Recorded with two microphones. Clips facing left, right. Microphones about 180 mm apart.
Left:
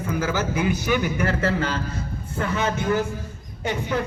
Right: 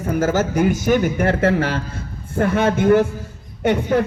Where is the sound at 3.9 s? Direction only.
50° right (ahead or behind).